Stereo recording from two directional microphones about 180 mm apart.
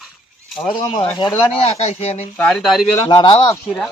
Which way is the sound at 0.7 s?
25° left (ahead or behind).